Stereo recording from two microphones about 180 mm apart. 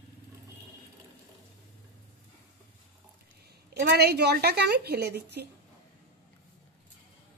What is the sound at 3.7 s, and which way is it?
A woman's voice, 65° right (ahead or behind).